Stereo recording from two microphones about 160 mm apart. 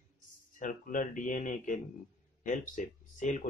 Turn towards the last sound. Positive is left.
turn(degrees=50)  # may be behind; listen again after turning